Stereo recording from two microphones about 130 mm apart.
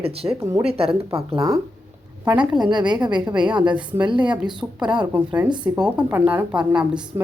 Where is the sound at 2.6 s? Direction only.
35° right (ahead or behind).